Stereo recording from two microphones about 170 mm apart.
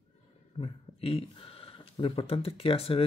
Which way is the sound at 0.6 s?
35° left (ahead or behind).